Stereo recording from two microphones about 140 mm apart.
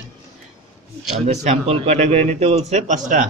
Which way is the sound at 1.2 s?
50° right (ahead or behind).